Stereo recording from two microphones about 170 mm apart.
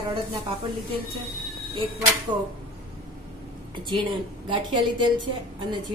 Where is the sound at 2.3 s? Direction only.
25° right (ahead or behind).